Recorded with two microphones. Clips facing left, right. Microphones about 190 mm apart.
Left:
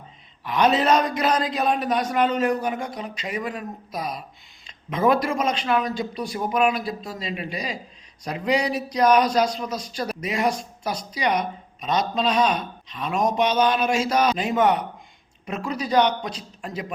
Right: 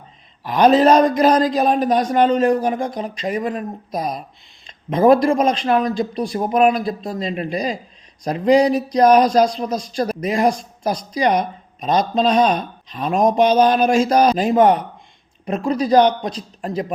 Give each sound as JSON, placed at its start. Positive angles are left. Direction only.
{"t": 0.4, "sound": "a man's voice", "side_deg": -40}